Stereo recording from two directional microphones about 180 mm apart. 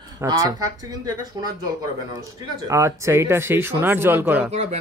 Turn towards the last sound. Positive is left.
turn(degrees=-10)  # may be behind; listen again after turning